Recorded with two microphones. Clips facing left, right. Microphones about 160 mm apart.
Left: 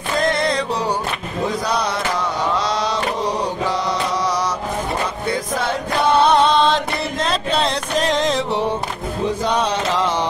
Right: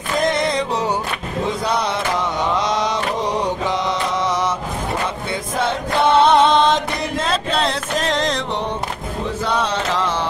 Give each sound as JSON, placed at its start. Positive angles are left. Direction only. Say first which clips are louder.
{"t": 0.2, "sound": "music", "louder": "right 1 dB", "side_deg": -20}
{"t": 2.5, "sound": "mantra", "louder": "right 2 dB", "side_deg": -20}
{"t": 5.9, "sound": "music", "louder": "right 1 dB", "side_deg": -25}
{"t": 7.2, "sound": "music", "louder": "even", "side_deg": 0}
{"t": 9.5, "sound": "chant", "louder": "right 2 dB", "side_deg": 15}